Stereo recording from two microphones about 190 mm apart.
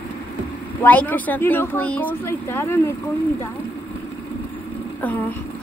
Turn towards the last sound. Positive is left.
turn(degrees=10)  # may be behind; listen again after turning